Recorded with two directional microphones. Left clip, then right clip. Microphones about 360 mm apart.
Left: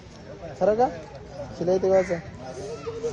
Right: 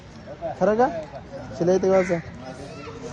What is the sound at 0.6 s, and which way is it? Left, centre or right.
A man's voice, right.